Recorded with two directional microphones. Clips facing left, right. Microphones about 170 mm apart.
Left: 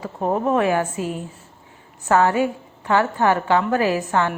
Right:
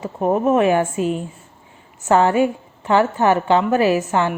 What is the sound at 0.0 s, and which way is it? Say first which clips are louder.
A woman's voice: right 4 dB; 20° right (ahead or behind).